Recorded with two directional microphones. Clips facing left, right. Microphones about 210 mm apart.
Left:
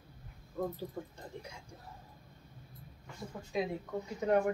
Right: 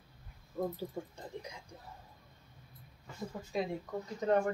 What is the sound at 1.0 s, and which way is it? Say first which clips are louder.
Speech: right 1 dB; 15° right (ahead or behind).